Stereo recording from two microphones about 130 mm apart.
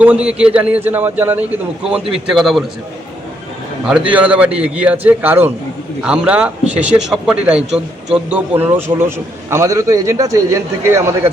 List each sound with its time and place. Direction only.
0.0 s a man's voice: 10° right (ahead or behind)
3.8 s a man's voice: 10° right (ahead or behind)